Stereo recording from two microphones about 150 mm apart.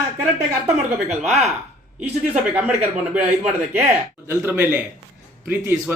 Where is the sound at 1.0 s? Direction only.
50° right (ahead or behind).